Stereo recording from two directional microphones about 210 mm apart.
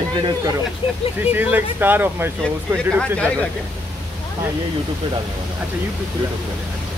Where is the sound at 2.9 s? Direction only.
5° left (ahead or behind).